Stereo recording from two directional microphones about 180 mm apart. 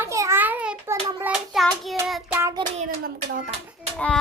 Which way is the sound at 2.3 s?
15° right (ahead or behind).